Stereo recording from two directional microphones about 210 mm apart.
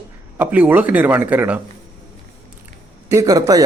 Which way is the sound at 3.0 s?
15° right (ahead or behind).